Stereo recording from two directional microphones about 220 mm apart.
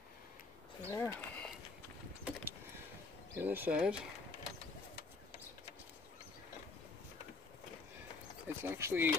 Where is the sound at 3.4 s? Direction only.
10° right (ahead or behind).